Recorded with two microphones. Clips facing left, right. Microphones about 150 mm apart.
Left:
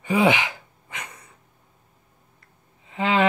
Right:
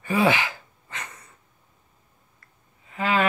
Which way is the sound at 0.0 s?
20° left (ahead or behind).